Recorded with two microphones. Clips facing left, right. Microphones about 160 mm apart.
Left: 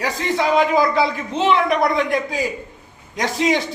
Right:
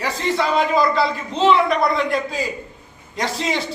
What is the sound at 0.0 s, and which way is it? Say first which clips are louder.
A man's voice: left 1 dB; 15° left (ahead or behind).